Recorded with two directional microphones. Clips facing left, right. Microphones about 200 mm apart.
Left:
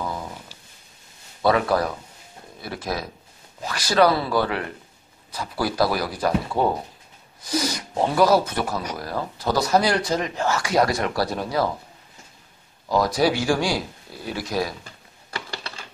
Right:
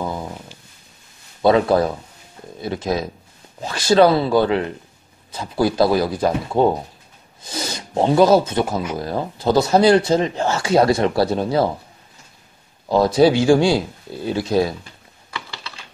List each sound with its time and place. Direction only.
1.4 s speech: 25° right (ahead or behind)
12.8 s speech: 25° right (ahead or behind)